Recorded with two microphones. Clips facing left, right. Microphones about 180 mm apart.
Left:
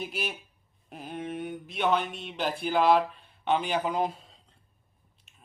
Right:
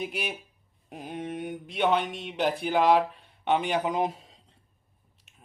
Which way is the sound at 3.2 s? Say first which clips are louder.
Right 1 dB; 65° right (ahead or behind).